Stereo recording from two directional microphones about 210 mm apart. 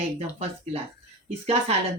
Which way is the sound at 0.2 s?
30° right (ahead or behind).